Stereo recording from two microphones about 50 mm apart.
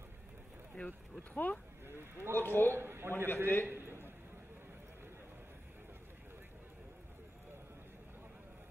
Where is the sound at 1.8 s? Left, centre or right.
Right.